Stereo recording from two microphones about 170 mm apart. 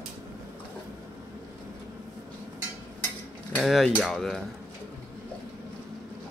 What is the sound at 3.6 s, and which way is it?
Speech, centre (ahead or behind).